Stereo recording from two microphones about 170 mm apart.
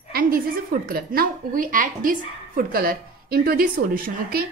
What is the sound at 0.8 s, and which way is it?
A woman's voice, 60° right (ahead or behind).